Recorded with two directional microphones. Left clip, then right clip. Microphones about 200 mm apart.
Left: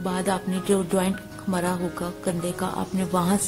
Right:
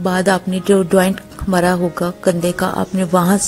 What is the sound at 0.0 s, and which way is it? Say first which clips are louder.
Speech: right 10 dB; 25° right (ahead or behind).